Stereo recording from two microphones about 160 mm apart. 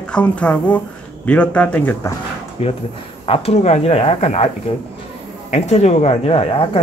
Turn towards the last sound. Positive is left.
turn(degrees=35)  # may be behind; listen again after turning